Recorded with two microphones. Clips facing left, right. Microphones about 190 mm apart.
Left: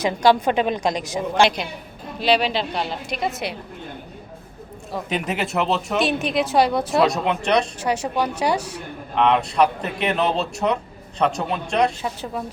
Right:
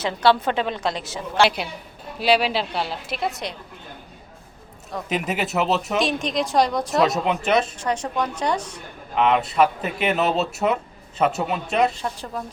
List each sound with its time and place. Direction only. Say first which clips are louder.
0.0 s a woman's voice: left 2 dB; 15° left (ahead or behind)
2.1 s speech: even; 10° right (ahead or behind)
4.9 s speech: even; centre (ahead or behind)
7.8 s a woman's voice: left 2 dB; 10° left (ahead or behind)
9.1 s speech: left 1 dB; 5° right (ahead or behind)